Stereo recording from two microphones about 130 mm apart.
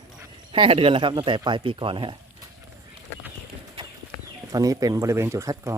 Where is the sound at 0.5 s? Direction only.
40° right (ahead or behind).